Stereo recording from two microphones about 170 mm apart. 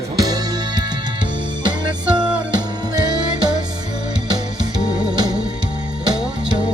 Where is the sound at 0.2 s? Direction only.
25° right (ahead or behind).